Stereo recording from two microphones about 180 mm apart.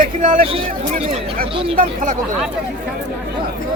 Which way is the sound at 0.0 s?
50° right (ahead or behind).